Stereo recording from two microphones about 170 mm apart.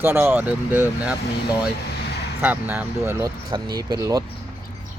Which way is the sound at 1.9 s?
85° left.